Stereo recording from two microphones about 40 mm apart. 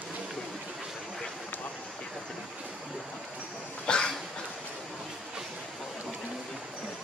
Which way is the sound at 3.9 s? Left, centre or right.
Left.